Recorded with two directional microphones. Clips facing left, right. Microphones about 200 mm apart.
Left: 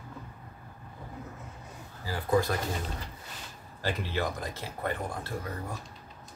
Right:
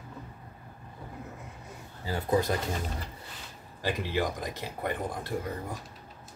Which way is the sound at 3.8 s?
15° right (ahead or behind).